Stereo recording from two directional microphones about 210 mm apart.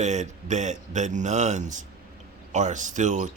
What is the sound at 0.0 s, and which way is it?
Speech, 35° right (ahead or behind).